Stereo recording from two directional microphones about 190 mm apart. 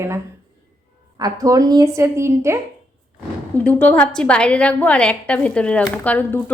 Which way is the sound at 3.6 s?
10° left (ahead or behind).